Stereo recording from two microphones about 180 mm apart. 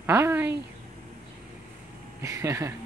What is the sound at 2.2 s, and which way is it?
Speech, 15° right (ahead or behind).